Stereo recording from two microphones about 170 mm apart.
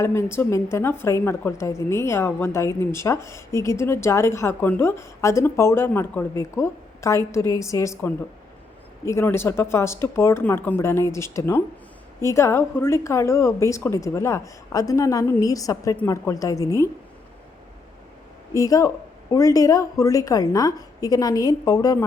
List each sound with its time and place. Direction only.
0.0 s a woman's voice: 15° left (ahead or behind)
18.5 s a woman's voice: 20° left (ahead or behind)